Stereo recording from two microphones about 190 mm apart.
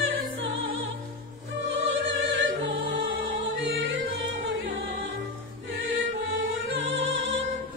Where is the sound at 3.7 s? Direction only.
80° right.